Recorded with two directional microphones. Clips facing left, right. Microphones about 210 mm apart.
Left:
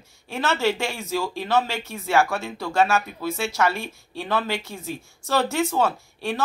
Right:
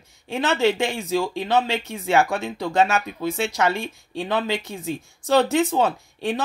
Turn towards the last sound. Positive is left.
turn(degrees=-20)  # may be behind; listen again after turning